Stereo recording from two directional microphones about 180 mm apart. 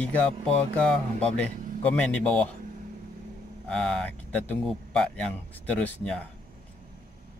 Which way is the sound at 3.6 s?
5° left (ahead or behind).